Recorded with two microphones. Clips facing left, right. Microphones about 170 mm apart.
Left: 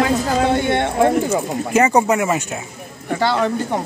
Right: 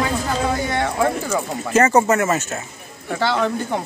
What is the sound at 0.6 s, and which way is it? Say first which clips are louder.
Speech: left 4 dB; 25° left (ahead or behind).